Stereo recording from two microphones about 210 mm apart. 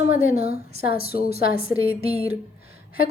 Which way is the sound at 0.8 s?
45° left (ahead or behind).